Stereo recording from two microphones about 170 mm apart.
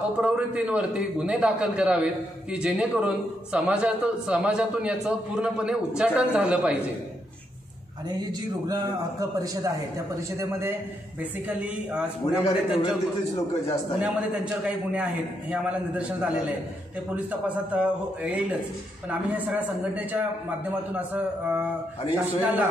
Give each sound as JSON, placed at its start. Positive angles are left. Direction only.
{"t": 0.2, "sound": "a man's voice", "side_deg": -5}
{"t": 8.3, "sound": "speech", "side_deg": -25}
{"t": 11.4, "sound": "a man's voice", "side_deg": -5}
{"t": 14.0, "sound": "a man's voice", "side_deg": -5}